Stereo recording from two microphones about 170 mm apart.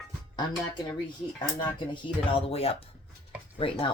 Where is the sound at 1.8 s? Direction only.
30° left (ahead or behind).